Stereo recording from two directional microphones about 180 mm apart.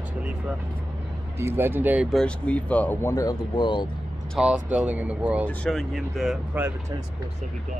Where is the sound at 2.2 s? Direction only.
5° left (ahead or behind); by 3.9 s 25° left (ahead or behind).